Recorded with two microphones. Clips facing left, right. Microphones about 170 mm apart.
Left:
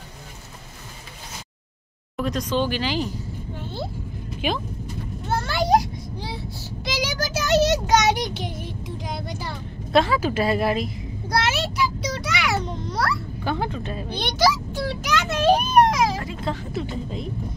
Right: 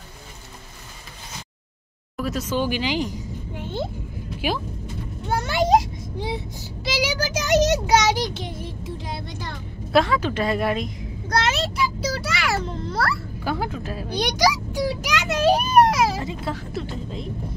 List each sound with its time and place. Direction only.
2.1 s speech: 5° right (ahead or behind)
5.3 s a child's voice: 20° right (ahead or behind)
6.8 s child singing: 5° right (ahead or behind)
8.2 s child singing: 25° right (ahead or behind)
8.6 s a child's voice: centre (ahead or behind)